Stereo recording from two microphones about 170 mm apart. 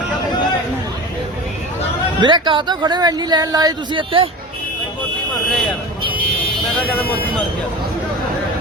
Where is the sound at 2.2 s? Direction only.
30° right (ahead or behind).